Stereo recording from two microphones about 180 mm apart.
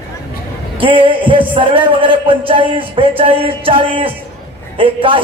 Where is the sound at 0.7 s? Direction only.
30° right (ahead or behind).